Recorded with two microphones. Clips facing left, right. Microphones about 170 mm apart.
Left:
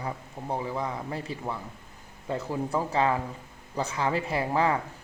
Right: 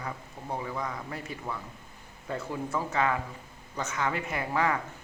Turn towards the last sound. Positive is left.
turn(degrees=30)  # may be behind; listen again after turning